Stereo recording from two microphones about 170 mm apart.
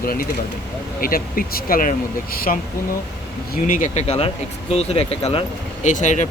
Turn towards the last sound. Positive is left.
turn(degrees=45)  # may be behind; listen again after turning